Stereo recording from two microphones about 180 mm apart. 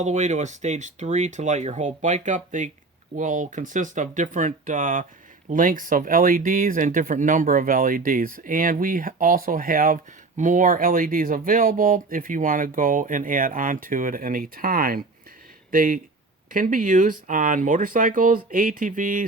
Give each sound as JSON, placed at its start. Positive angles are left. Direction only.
{"t": 0.0, "sound": "speech", "side_deg": -40}